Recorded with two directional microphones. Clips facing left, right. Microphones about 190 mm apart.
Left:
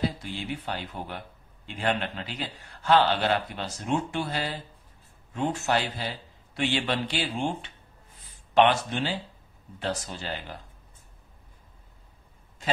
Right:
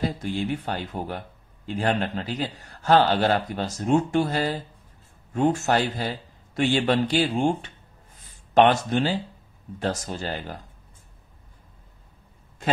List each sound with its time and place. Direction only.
0.0 s a man's voice: 45° right (ahead or behind)